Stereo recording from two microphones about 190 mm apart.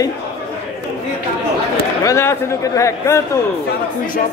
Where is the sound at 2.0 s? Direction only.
15° left (ahead or behind).